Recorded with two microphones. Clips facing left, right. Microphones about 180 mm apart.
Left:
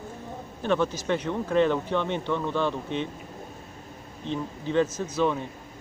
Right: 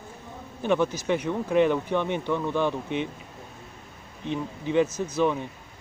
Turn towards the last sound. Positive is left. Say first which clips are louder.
# right 1 dB
turn(degrees=-15)  # may be behind; listen again after turning